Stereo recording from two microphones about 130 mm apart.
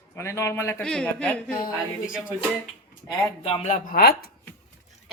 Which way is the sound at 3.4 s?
55° left (ahead or behind).